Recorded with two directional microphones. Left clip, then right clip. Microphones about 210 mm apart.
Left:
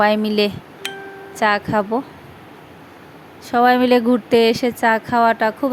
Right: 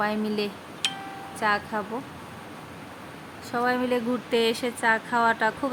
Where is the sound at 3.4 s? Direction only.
35° left (ahead or behind).